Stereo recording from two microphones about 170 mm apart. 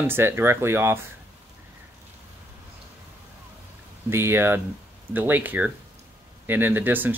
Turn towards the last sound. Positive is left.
turn(degrees=-10)  # may be behind; listen again after turning